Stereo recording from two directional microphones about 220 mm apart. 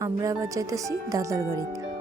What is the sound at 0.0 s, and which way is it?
Speech, 15° right (ahead or behind).